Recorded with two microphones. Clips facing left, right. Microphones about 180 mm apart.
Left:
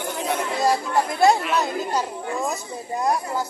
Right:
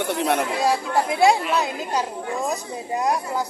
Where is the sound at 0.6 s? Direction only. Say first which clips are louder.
Left 3 dB; 10° right (ahead or behind).